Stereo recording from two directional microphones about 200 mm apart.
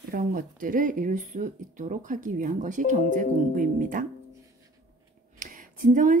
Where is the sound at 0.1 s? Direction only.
40° right (ahead or behind).